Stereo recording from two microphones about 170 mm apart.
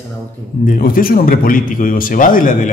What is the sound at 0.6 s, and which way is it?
Speech, 55° left (ahead or behind).